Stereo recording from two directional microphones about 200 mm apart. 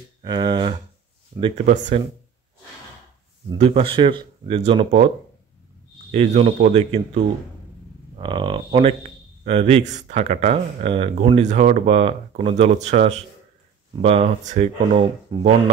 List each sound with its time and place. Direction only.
0.2 s speech: 20° right (ahead or behind)
3.5 s speech: 30° right (ahead or behind)
6.1 s speech: 35° right (ahead or behind)